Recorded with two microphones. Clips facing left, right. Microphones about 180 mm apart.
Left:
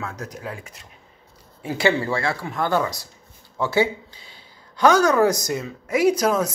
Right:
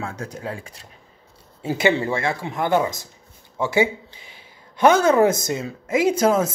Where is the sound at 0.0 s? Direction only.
30° right (ahead or behind).